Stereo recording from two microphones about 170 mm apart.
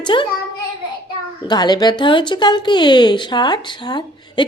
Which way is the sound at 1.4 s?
25° left (ahead or behind).